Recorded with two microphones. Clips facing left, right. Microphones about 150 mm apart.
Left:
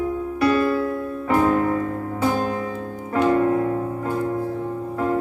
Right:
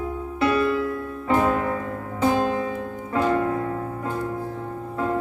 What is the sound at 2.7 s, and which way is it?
Music, 35° left (ahead or behind).